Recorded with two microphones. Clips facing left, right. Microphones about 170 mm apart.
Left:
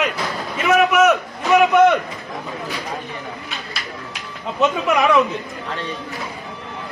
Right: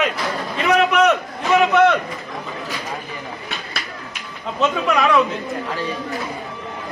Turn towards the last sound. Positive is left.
turn(degrees=20)  # may be behind; listen again after turning